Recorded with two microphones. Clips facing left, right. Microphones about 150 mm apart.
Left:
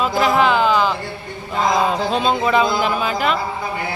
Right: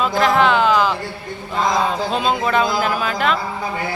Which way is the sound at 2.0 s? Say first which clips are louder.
Left 1 dB; centre (ahead or behind).